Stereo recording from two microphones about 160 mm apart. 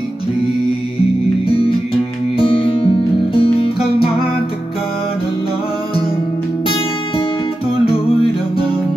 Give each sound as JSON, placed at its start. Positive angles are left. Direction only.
{"t": 1.5, "sound": "music", "side_deg": 35}